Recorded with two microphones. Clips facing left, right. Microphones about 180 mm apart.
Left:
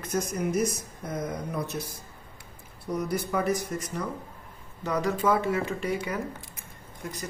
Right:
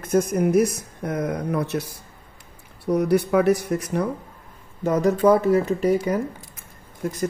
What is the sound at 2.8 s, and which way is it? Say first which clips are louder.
Speech: right 10 dB; 65° right (ahead or behind).